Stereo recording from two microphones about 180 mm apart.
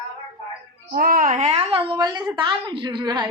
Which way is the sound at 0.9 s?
55° right (ahead or behind).